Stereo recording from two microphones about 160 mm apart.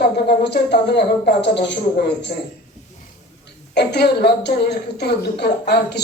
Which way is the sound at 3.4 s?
90° left.